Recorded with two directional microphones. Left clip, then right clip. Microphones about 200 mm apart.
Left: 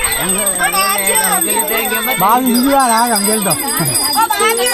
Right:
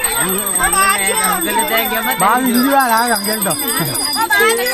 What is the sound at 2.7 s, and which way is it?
Speech, 40° left (ahead or behind).